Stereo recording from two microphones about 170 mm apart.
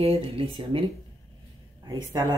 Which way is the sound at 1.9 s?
25° right (ahead or behind).